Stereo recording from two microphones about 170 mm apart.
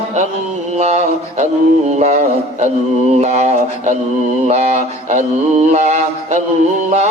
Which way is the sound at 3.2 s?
40° right (ahead or behind).